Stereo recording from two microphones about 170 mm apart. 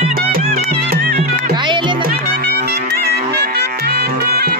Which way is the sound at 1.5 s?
25° right (ahead or behind).